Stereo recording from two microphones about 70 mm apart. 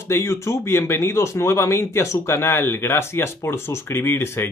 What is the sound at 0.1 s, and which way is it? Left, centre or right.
Speech, left.